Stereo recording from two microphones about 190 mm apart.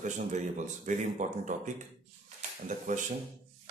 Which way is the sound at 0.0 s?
40° right (ahead or behind).